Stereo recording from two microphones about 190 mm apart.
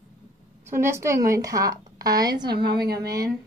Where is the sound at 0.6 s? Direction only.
15° right (ahead or behind).